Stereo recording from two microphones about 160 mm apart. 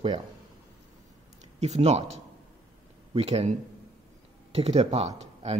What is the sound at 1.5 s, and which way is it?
Speech, 45° right (ahead or behind).